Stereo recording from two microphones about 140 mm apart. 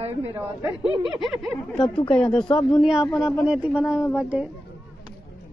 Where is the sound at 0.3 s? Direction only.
20° right (ahead or behind).